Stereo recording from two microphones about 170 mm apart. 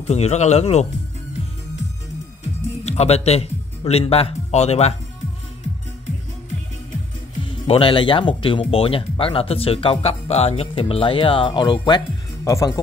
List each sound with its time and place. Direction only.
0.1 s speech: 40° left (ahead or behind)
2.8 s speech: 40° left (ahead or behind)
7.4 s speech: 35° left (ahead or behind)